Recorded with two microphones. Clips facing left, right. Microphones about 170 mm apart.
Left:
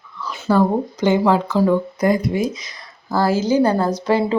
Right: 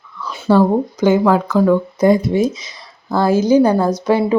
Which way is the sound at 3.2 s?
15° right (ahead or behind).